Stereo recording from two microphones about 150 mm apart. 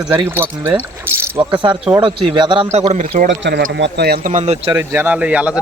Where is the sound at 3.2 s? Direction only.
80° right.